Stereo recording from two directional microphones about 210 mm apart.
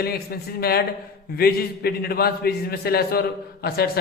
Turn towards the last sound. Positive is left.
turn(degrees=45)  # may be behind; listen again after turning